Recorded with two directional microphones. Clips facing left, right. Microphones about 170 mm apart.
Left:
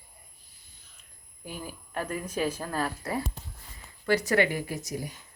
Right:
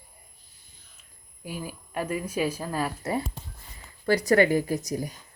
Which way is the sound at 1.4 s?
10° right (ahead or behind).